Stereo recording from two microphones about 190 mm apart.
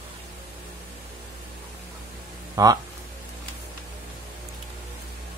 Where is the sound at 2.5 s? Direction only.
20° right (ahead or behind).